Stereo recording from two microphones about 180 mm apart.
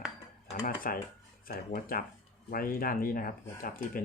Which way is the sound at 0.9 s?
50° left (ahead or behind).